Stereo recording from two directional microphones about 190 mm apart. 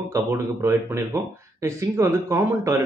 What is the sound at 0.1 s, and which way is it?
Speech, 15° right (ahead or behind).